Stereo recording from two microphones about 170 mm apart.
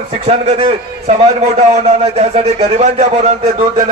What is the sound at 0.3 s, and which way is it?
A man's voice, 40° right (ahead or behind).